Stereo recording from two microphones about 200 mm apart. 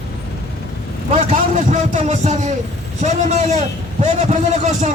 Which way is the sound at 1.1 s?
35° right (ahead or behind).